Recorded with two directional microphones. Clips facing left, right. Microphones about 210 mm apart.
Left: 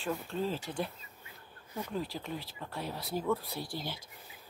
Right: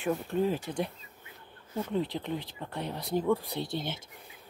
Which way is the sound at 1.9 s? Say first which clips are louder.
Right 6 dB; 20° right (ahead or behind).